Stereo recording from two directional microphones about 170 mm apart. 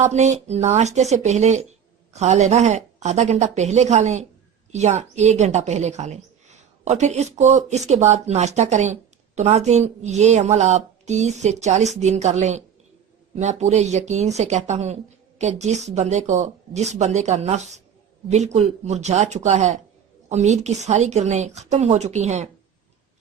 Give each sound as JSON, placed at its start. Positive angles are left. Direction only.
{"t": 0.0, "sound": "speech", "side_deg": -45}